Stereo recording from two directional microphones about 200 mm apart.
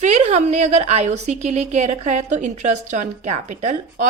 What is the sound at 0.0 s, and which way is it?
A woman's voice, 35° right (ahead or behind).